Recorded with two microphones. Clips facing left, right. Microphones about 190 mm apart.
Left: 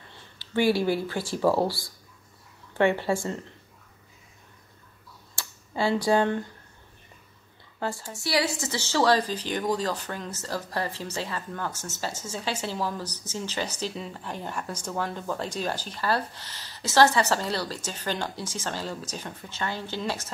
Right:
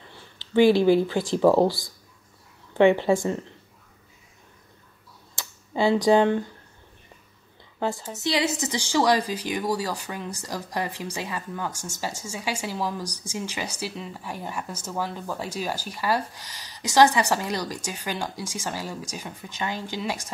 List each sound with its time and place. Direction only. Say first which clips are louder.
0.6 s a woman's voice: right 6 dB; 15° right (ahead or behind)
5.7 s a woman's voice: right 4 dB; 20° right (ahead or behind)
7.8 s a woman's voice: right 4 dB; 20° right (ahead or behind)